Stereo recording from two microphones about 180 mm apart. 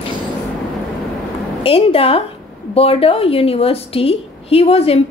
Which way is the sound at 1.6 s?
30° left (ahead or behind).